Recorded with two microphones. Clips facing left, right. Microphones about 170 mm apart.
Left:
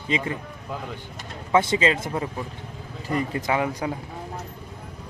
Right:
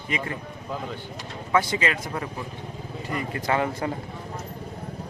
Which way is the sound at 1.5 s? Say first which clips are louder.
Left 3 dB; 25° left (ahead or behind).